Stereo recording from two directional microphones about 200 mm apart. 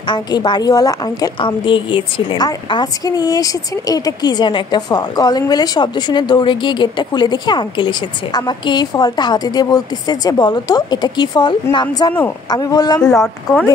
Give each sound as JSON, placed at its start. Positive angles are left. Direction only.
{"t": 0.0, "sound": "a woman's voice", "side_deg": 20}
{"t": 13.1, "sound": "speech", "side_deg": 0}